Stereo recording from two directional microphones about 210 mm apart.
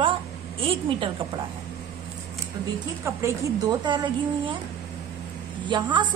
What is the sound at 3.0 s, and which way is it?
A woman's voice, 15° right (ahead or behind).